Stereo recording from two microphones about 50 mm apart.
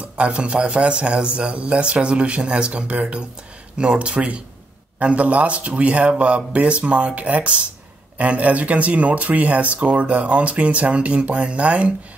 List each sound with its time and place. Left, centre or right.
0.2 s speech: right